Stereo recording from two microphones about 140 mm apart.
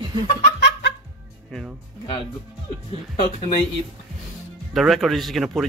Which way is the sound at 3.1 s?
50° left (ahead or behind).